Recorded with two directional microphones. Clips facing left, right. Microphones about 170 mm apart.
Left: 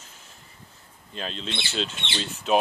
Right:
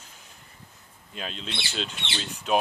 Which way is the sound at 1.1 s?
5° right (ahead or behind).